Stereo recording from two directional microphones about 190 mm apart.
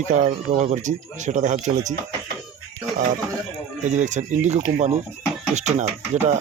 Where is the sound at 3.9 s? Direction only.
40° right (ahead or behind).